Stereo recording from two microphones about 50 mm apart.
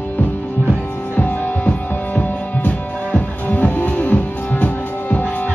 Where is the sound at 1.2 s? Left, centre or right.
Left.